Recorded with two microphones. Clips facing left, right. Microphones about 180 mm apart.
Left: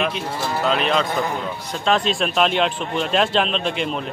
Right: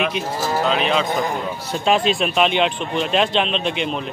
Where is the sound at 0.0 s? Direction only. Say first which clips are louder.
Right 2 dB; centre (ahead or behind).